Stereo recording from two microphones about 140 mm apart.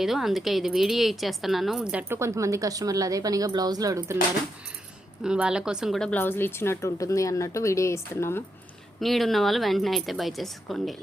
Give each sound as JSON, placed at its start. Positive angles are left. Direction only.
{"t": 0.0, "sound": "speech", "side_deg": 0}
{"t": 5.2, "sound": "speech", "side_deg": -5}
{"t": 9.0, "sound": "speech", "side_deg": 0}